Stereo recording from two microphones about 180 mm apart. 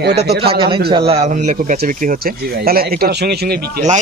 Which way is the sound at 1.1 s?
40° right (ahead or behind).